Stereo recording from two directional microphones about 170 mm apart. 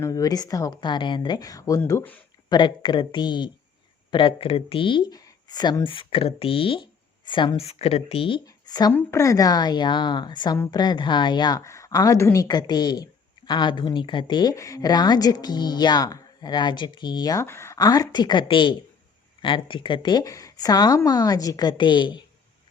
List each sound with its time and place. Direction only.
0.0 s a woman's voice: 20° left (ahead or behind)
2.5 s a woman's voice: 25° left (ahead or behind)
8.9 s a woman's voice: 10° left (ahead or behind); by 22.2 s 25° left (ahead or behind)